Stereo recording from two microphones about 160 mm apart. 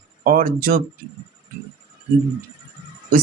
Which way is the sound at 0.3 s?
60° right (ahead or behind).